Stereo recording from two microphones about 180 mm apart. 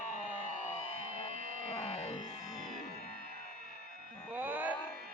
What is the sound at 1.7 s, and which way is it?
Music, 35° left (ahead or behind).